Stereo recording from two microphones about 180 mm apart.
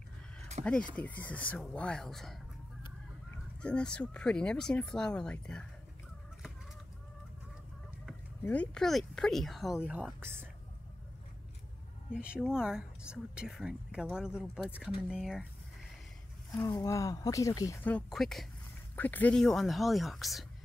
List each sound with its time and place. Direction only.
0.7 s a woman's voice: 5° left (ahead or behind)
3.6 s a woman's voice: 5° left (ahead or behind)
8.5 s a woman's voice: 5° left (ahead or behind); by 10.5 s 10° right (ahead or behind)
12.1 s a woman's voice: 5° right (ahead or behind)
16.5 s speech: 15° left (ahead or behind)
17.9 s a woman's voice: centre (ahead or behind)